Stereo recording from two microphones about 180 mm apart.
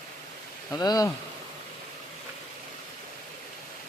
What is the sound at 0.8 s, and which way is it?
Speech, 20° left (ahead or behind).